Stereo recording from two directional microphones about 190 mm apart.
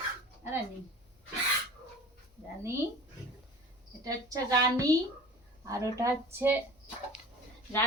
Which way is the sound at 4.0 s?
20° right (ahead or behind).